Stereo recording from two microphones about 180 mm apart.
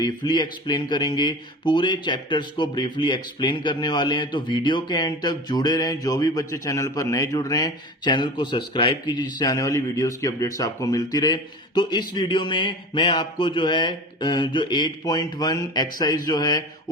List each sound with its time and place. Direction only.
0.0 s speech: 25° left (ahead or behind)